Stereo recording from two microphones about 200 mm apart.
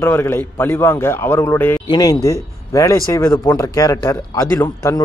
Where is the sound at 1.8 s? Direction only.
20° left (ahead or behind).